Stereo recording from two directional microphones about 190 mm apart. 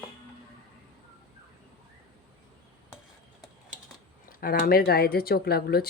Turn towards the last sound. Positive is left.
turn(degrees=55)  # may be behind; listen again after turning